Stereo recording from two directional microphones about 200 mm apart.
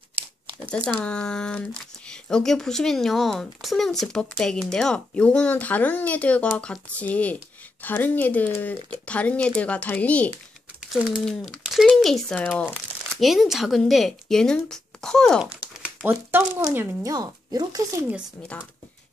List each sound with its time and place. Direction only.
1.0 s speech: 5° left (ahead or behind)
16.1 s speech: 10° right (ahead or behind)